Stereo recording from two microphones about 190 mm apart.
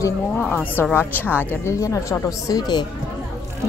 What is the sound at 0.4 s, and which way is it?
Speech, 10° left (ahead or behind).